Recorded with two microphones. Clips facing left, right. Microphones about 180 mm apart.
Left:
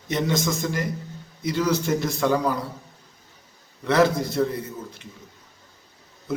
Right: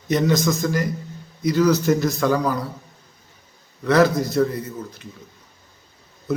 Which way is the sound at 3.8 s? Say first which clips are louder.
Right 3 dB; 25° left (ahead or behind).